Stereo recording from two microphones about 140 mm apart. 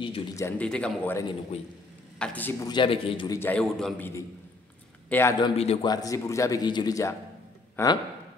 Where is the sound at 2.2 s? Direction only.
10° left (ahead or behind).